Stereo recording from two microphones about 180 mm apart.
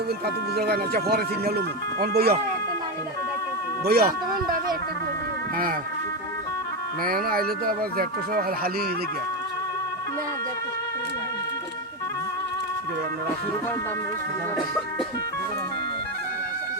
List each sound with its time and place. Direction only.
0.5 s speech: 60° right (ahead or behind)
3.8 s speech: 55° right (ahead or behind)
7.0 s speech: 55° right (ahead or behind)